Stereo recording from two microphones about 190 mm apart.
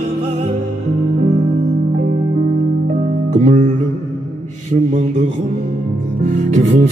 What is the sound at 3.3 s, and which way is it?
Music, 40° right (ahead or behind).